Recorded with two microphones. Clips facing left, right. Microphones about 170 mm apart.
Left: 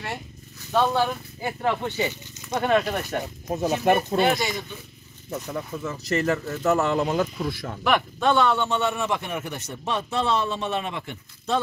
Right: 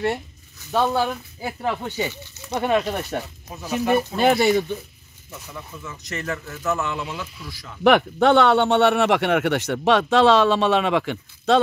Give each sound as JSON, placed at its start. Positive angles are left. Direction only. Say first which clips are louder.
{"t": 0.7, "sound": "speech", "louder": "right 1 dB", "side_deg": -5}
{"t": 3.4, "sound": "speech", "louder": "left 3 dB", "side_deg": 45}
{"t": 4.2, "sound": "speech", "louder": "right 5 dB", "side_deg": -60}
{"t": 5.3, "sound": "speech", "louder": "left 7 dB", "side_deg": 40}
{"t": 7.8, "sound": "speech", "louder": "right 6 dB", "side_deg": -65}